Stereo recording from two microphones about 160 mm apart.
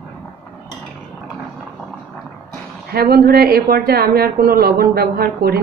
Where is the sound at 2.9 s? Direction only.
75° right (ahead or behind).